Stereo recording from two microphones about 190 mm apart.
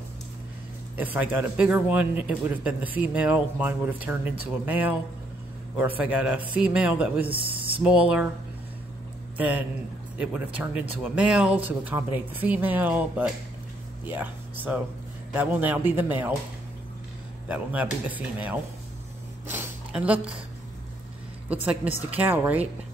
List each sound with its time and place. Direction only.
0.9 s speech: 10° right (ahead or behind)
7.2 s speech: 30° right (ahead or behind)
7.8 s speech: 5° right (ahead or behind)
9.4 s speech: 10° right (ahead or behind)
17.5 s speech: 10° right (ahead or behind)
19.4 s a sound: 10° right (ahead or behind)
22.1 s speech: 10° right (ahead or behind)